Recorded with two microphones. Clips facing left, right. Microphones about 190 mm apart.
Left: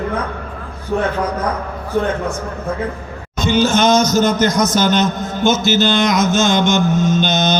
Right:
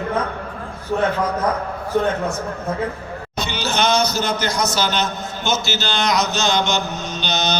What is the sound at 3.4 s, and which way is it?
A man's voice, 50° left (ahead or behind).